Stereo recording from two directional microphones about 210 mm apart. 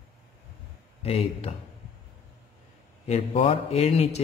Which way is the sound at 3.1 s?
30° left (ahead or behind).